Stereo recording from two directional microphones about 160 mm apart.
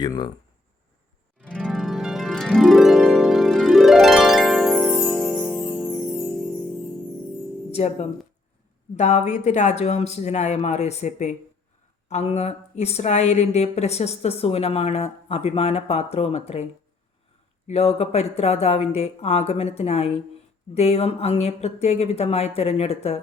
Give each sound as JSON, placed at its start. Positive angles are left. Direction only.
{"t": 0.0, "sound": "speech", "side_deg": 30}
{"t": 1.4, "sound": "music", "side_deg": -5}
{"t": 1.6, "sound": "harp", "side_deg": 0}
{"t": 7.7, "sound": "speech", "side_deg": 45}
{"t": 17.7, "sound": "speech", "side_deg": 40}